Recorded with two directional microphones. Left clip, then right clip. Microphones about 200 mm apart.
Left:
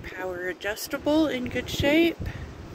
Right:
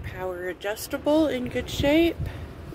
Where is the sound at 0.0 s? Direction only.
Centre (ahead or behind).